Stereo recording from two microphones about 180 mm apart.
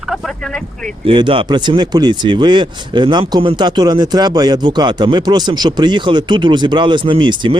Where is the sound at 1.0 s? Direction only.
30° right (ahead or behind).